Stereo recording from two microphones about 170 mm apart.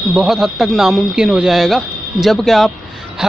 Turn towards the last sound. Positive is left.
turn(degrees=0)  # may be behind; listen again after turning